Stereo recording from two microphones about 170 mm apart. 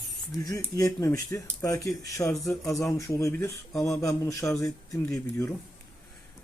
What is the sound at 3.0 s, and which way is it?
A man's voice, 20° left (ahead or behind).